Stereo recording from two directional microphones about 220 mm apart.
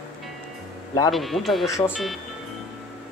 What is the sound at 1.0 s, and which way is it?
Speech, centre (ahead or behind).